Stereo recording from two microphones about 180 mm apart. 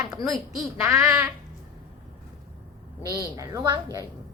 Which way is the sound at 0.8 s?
20° right (ahead or behind).